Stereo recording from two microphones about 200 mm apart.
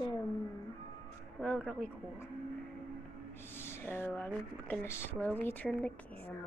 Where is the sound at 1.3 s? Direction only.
5° left (ahead or behind).